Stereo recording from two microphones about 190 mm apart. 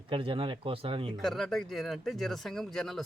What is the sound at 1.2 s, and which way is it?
Speech, centre (ahead or behind).